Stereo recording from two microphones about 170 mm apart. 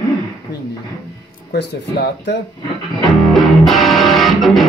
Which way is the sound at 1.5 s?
75° left (ahead or behind).